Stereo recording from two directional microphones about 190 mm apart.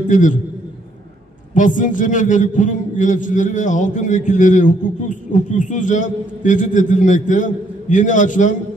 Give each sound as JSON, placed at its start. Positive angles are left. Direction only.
{"t": 0.1, "sound": "a man's voice", "side_deg": 40}
{"t": 1.5, "sound": "a man's voice", "side_deg": 40}